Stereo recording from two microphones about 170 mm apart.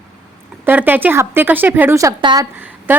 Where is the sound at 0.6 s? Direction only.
10° right (ahead or behind).